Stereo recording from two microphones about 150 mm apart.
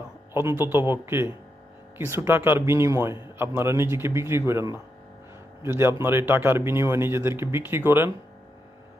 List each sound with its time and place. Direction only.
0.3 s speech: 15° right (ahead or behind)